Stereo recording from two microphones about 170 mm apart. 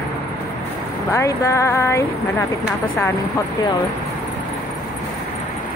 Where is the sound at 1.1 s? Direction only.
15° left (ahead or behind).